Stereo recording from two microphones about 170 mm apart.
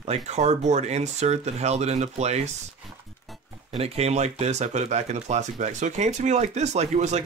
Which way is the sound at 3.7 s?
35° right (ahead or behind).